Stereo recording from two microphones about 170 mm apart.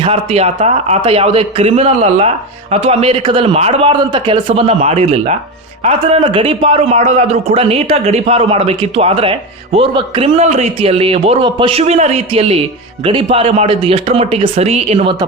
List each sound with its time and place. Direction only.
0.0 s speech: 35° right (ahead or behind)